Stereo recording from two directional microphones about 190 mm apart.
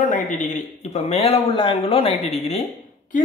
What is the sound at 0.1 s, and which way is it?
Speech, 40° left (ahead or behind).